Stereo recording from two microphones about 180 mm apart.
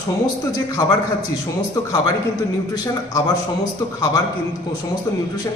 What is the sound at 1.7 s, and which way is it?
Speech, 20° left (ahead or behind).